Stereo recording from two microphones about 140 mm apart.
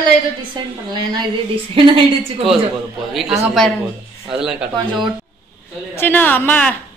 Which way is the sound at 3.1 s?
Centre (ahead or behind).